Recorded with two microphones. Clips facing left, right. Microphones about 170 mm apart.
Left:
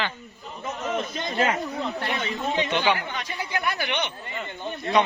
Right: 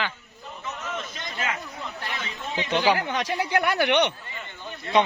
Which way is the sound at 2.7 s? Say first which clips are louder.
Right 4 dB; 35° right (ahead or behind).